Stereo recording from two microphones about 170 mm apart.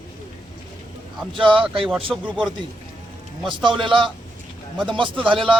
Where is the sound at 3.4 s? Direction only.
30° right (ahead or behind).